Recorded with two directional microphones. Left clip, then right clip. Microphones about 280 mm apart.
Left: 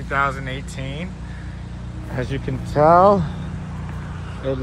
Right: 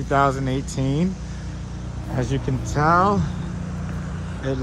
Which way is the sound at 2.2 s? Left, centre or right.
Centre.